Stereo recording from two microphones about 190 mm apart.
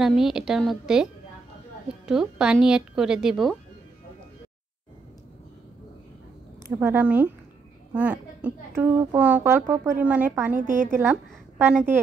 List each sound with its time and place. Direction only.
0.0 s a woman's voice: centre (ahead or behind)
2.0 s a woman's voice: 5° right (ahead or behind)
6.8 s a woman's voice: 10° right (ahead or behind)
10.6 s a woman's voice: 40° right (ahead or behind)
11.0 s a woman's voice: 10° right (ahead or behind)